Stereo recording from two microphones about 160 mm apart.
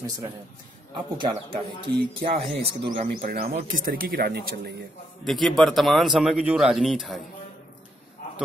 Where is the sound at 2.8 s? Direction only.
30° right (ahead or behind).